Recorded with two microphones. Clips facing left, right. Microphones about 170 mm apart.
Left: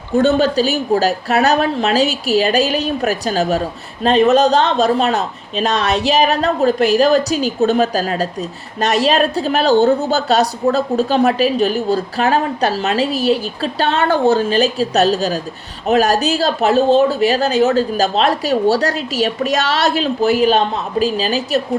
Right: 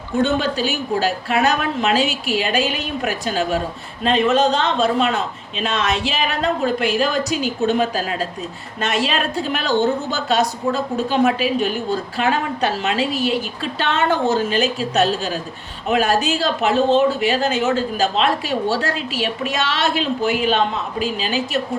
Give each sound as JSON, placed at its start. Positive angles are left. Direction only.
{"t": 0.2, "sound": "speech", "side_deg": 35}